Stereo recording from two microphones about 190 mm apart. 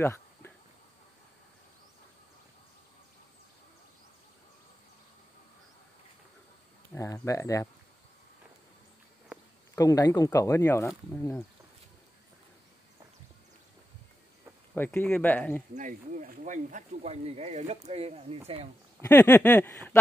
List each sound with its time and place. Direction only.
0.0 s a sound: 10° left (ahead or behind)
6.9 s speech: 15° left (ahead or behind)
9.8 s speech: 20° left (ahead or behind)
14.7 s speech: 10° left (ahead or behind)
15.7 s speech: 40° right (ahead or behind)
18.9 s speech: 10° left (ahead or behind)